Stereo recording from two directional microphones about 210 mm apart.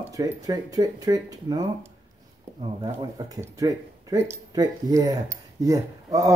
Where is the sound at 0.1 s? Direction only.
15° right (ahead or behind).